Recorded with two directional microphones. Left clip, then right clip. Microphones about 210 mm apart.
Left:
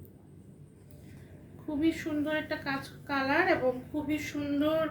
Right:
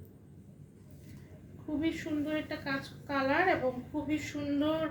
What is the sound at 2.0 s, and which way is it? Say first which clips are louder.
A woman's voice: left 3 dB; 15° left (ahead or behind).